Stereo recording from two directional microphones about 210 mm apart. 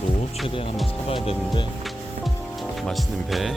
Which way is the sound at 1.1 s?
25° left (ahead or behind).